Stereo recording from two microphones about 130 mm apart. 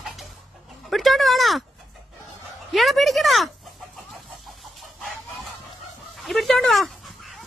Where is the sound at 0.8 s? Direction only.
Centre (ahead or behind).